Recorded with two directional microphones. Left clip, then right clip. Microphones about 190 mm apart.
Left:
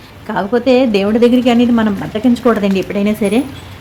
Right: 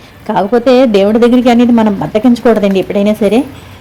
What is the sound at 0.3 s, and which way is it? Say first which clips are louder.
A woman's voice: right 4 dB; 15° right (ahead or behind).